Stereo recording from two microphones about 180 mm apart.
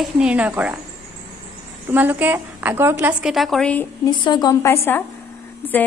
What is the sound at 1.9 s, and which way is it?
A woman's voice, 10° right (ahead or behind).